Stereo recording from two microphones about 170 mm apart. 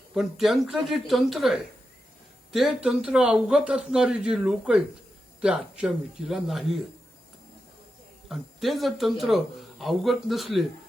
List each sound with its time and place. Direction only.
0.1 s speech: centre (ahead or behind)
8.3 s speech: centre (ahead or behind)